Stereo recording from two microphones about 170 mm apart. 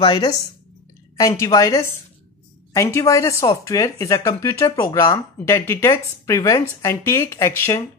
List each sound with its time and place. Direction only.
0.0 s speech: 25° left (ahead or behind)